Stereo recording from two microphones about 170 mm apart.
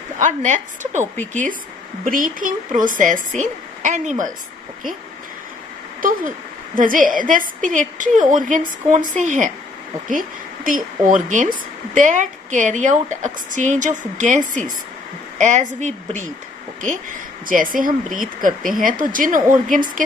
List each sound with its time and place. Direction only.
0.2 s a woman's voice: 45° right (ahead or behind)
6.0 s a woman's voice: 50° right (ahead or behind)